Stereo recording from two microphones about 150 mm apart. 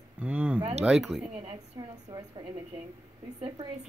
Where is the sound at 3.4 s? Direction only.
40° right (ahead or behind).